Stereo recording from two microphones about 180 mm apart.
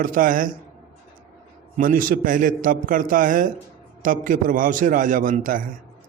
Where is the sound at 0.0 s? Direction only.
50° right (ahead or behind).